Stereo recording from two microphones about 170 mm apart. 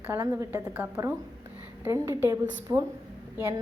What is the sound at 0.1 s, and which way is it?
Speech, 15° right (ahead or behind).